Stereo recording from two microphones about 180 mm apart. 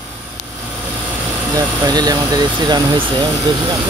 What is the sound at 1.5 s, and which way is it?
Speech, 20° right (ahead or behind).